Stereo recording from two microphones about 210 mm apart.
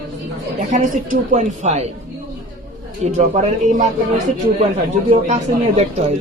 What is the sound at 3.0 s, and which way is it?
Speech, 30° right (ahead or behind).